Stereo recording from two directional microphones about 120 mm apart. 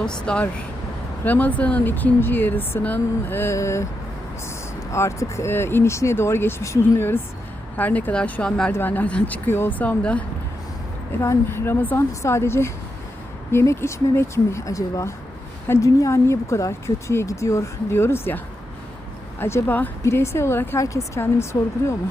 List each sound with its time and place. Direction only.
0.0 s speech: 5° left (ahead or behind); by 3.8 s 25° left (ahead or behind)
4.9 s speech: 25° left (ahead or behind)
11.2 s speech: 20° left (ahead or behind)
19.4 s speech: 20° left (ahead or behind)